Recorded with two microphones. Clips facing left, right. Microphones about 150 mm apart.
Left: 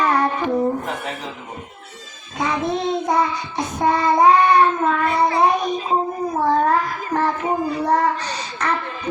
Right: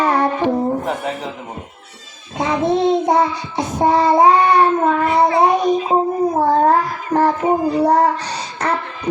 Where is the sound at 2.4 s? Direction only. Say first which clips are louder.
Right 4 dB; 25° right (ahead or behind).